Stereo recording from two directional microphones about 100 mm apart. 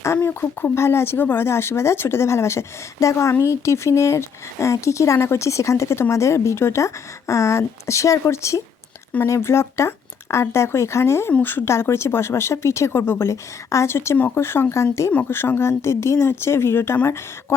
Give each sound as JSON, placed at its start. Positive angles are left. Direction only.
{"t": 0.0, "sound": "speech", "side_deg": 25}